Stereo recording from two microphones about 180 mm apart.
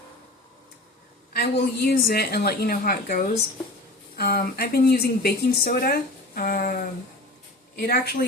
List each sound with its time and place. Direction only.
1.3 s speech: 65° left (ahead or behind)